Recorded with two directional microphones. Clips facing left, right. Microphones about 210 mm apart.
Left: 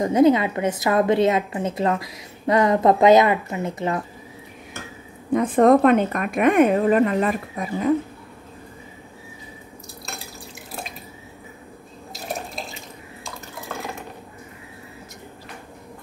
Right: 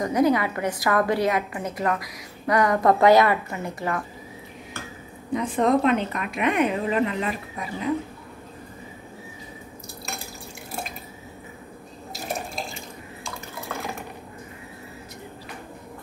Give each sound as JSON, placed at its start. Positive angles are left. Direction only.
{"t": 0.0, "sound": "a woman's voice", "side_deg": 25}
{"t": 5.3, "sound": "speech", "side_deg": 50}
{"t": 12.3, "sound": "water", "side_deg": 0}